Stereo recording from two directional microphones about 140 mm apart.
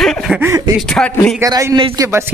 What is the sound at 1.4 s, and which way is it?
Speech, 25° right (ahead or behind).